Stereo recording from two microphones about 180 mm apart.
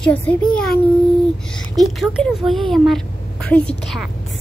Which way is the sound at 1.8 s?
Centre (ahead or behind).